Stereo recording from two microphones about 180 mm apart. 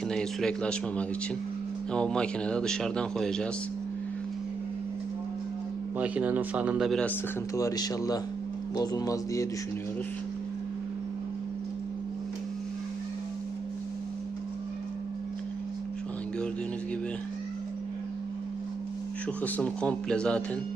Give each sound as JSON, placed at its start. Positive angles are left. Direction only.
{"t": 0.1, "sound": "speech", "side_deg": 5}
{"t": 6.0, "sound": "speech", "side_deg": -10}
{"t": 19.4, "sound": "speech", "side_deg": 5}